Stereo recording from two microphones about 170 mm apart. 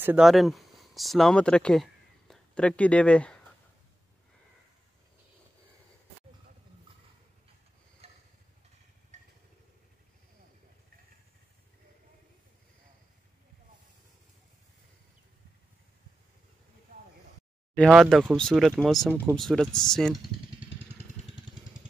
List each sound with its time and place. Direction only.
0.0 s speech: 5° right (ahead or behind)
9.1 s vehicle: 45° right (ahead or behind)
17.7 s speech: centre (ahead or behind)